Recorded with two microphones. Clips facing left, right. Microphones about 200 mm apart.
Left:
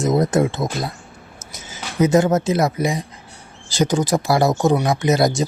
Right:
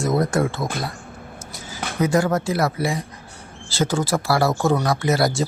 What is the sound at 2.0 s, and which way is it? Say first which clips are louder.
Speech: left 4 dB; 20° left (ahead or behind).